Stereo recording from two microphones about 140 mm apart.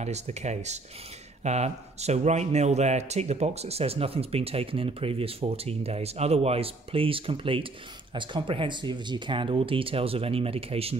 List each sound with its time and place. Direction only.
0.0 s speech: 55° right (ahead or behind)